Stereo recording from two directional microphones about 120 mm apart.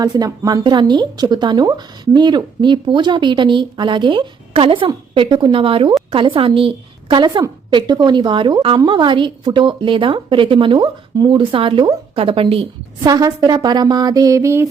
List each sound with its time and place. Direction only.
0.0 s a woman's voice: 30° right (ahead or behind); by 12.6 s 50° right (ahead or behind)
13.1 s a woman's voice: 35° right (ahead or behind)